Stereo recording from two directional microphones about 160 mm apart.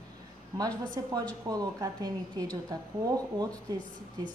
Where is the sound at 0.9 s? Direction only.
25° right (ahead or behind).